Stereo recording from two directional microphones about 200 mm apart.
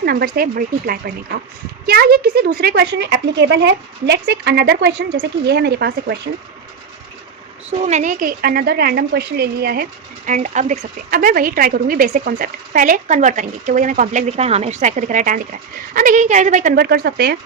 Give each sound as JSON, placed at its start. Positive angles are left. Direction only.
{"t": 0.0, "sound": "a woman's voice", "side_deg": -50}
{"t": 7.9, "sound": "a woman's voice", "side_deg": -35}
{"t": 10.2, "sound": "a woman's voice", "side_deg": -40}